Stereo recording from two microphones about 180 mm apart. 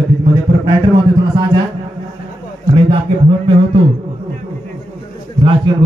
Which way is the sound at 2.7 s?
30° right (ahead or behind).